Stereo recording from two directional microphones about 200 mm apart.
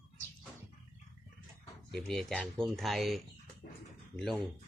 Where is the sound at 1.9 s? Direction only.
Centre (ahead or behind).